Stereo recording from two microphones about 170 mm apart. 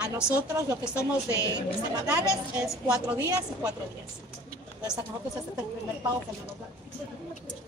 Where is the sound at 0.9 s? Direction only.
20° left (ahead or behind).